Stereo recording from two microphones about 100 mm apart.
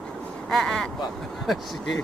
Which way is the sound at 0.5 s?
5° left (ahead or behind).